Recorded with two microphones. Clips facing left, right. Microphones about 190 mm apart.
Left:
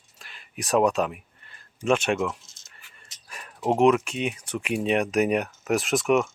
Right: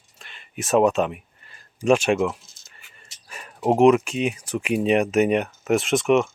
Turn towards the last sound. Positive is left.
turn(degrees=0)  # may be behind; listen again after turning